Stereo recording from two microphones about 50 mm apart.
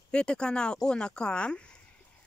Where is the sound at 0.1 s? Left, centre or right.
Centre.